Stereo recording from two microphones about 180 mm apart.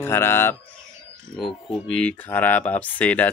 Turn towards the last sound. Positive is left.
turn(degrees=10)  # may be behind; listen again after turning